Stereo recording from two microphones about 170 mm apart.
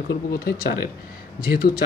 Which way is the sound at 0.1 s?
60° left (ahead or behind).